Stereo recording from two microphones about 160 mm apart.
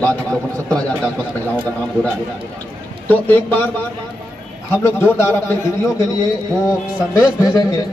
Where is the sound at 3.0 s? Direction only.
10° left (ahead or behind).